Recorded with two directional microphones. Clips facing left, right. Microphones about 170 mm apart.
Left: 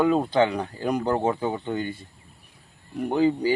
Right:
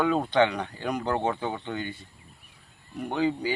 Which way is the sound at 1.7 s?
40° left (ahead or behind).